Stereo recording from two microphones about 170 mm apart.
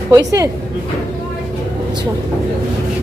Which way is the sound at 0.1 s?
20° right (ahead or behind).